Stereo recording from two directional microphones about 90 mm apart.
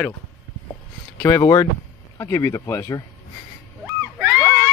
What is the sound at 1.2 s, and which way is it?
Speech, 35° left (ahead or behind).